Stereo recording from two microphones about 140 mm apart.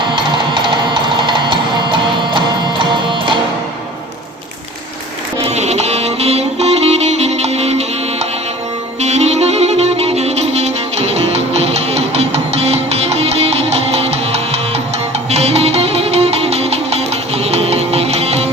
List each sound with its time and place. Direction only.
1.3 s music: 35° right (ahead or behind)
5.4 s music: 50° right (ahead or behind)